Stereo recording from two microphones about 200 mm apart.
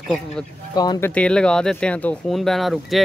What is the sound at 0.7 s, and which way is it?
Speech, 20° left (ahead or behind).